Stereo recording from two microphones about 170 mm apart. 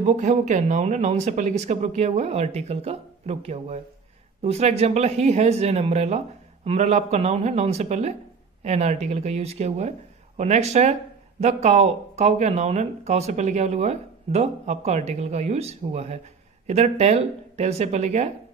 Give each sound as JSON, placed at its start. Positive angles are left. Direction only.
{"t": 0.0, "sound": "speech", "side_deg": -45}